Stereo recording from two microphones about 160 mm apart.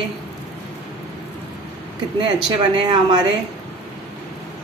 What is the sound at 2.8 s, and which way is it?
Speech, 25° right (ahead or behind).